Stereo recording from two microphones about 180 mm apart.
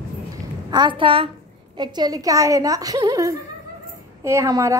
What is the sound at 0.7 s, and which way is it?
A woman's voice, 25° right (ahead or behind).